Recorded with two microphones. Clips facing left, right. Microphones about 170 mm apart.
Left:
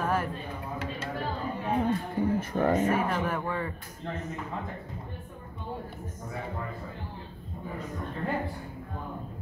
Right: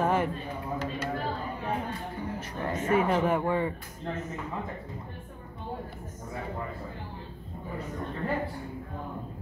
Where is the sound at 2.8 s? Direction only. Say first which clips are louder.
Right 2 dB; 25° right (ahead or behind).